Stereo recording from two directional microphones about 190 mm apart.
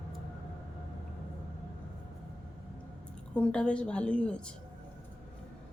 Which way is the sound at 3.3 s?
5° left (ahead or behind).